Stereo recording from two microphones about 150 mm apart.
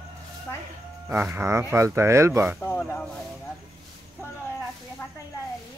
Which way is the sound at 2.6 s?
10° left (ahead or behind).